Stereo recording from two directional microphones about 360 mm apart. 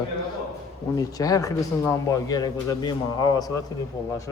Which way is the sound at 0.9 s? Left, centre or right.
Centre.